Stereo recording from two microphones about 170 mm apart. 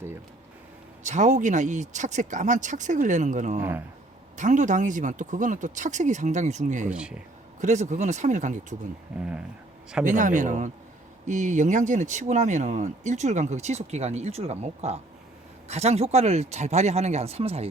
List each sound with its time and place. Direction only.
1.0 s speech: 45° right (ahead or behind)
3.6 s speech: 15° right (ahead or behind)
4.4 s speech: 45° right (ahead or behind)
6.9 s speech: 5° right (ahead or behind)
7.6 s speech: 45° right (ahead or behind)
9.1 s speech: 5° right (ahead or behind)
10.0 s speech: 50° right (ahead or behind)